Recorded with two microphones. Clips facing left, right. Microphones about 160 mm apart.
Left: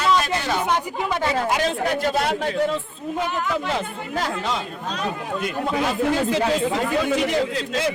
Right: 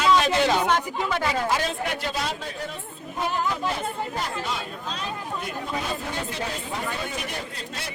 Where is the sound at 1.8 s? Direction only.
50° left (ahead or behind); by 7.9 s 90° left.